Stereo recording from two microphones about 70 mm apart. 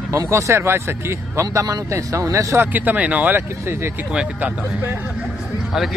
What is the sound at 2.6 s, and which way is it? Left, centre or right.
Speech, right.